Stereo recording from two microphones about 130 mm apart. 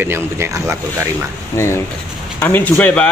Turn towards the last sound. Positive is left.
turn(degrees=10)  # may be behind; listen again after turning